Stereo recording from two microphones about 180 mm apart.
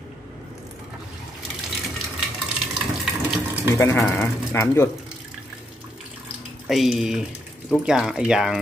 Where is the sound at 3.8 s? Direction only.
15° left (ahead or behind).